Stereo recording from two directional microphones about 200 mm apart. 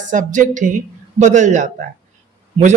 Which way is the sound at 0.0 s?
40° right (ahead or behind).